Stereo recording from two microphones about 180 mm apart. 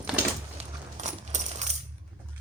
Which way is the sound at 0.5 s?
40° right (ahead or behind).